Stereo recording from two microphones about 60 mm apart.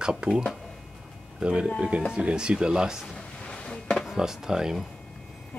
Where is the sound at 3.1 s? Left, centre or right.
Centre.